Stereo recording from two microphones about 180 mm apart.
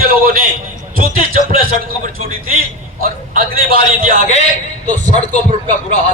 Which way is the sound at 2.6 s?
55° right (ahead or behind).